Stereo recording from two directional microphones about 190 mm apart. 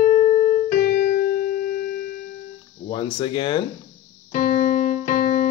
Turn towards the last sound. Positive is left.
turn(degrees=40)  # may be behind; listen again after turning